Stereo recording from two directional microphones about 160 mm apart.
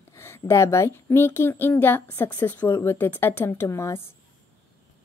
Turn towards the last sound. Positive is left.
turn(degrees=15)  # may be behind; listen again after turning